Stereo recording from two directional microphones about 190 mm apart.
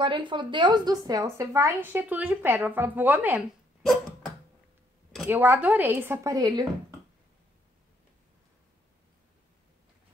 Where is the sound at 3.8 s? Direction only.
Centre (ahead or behind).